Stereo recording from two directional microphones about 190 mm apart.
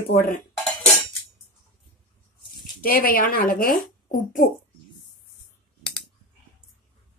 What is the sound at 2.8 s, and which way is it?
Speech, 50° left (ahead or behind).